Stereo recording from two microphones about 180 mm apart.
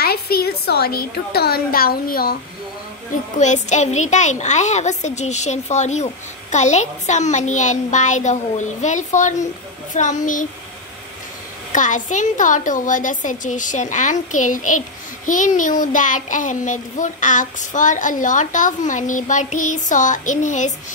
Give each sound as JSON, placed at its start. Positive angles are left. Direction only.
{"t": 0.0, "sound": "a woman's voice", "side_deg": 60}
{"t": 3.3, "sound": "a child's voice", "side_deg": 40}
{"t": 9.9, "sound": "child singing", "side_deg": 45}
{"t": 11.7, "sound": "child singing", "side_deg": 45}